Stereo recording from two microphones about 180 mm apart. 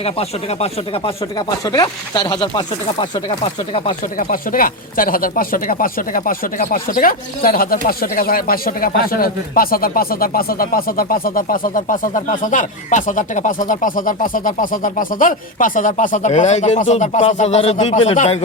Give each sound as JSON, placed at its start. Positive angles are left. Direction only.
{"t": 0.0, "sound": "speech", "side_deg": 35}
{"t": 1.4, "sound": "speech", "side_deg": 20}
{"t": 4.2, "sound": "speech", "side_deg": 50}